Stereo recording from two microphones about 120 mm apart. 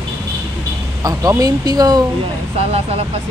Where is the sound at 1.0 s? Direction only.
30° right (ahead or behind).